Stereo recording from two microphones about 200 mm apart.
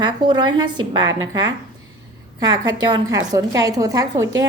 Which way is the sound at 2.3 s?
20° right (ahead or behind).